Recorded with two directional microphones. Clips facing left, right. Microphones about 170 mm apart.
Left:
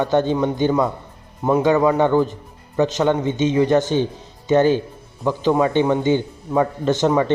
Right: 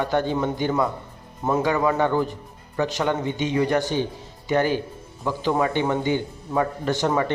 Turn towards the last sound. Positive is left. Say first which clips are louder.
# left 5 dB
turn(degrees=20)  # may be behind; listen again after turning